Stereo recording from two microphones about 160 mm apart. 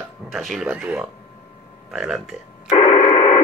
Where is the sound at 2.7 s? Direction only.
40° left (ahead or behind).